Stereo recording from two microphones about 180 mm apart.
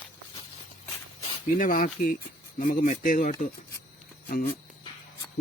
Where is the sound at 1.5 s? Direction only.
50° left (ahead or behind).